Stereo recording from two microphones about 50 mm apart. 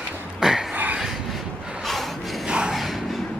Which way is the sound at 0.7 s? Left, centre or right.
Right.